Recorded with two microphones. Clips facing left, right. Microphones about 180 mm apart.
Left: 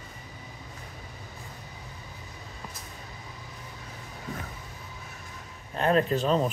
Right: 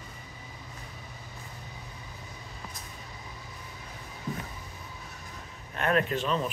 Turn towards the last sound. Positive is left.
turn(degrees=35)  # may be behind; listen again after turning